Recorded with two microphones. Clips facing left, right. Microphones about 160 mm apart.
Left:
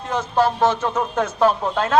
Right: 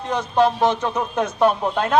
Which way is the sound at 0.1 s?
15° right (ahead or behind).